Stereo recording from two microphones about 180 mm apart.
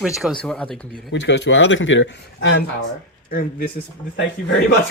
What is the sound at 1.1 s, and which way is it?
Speech, 75° left (ahead or behind).